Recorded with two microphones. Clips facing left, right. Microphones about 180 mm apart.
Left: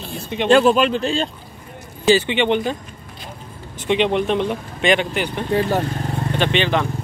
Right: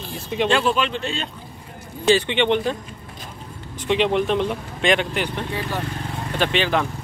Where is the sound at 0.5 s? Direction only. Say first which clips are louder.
Left 9 dB; 40° left (ahead or behind).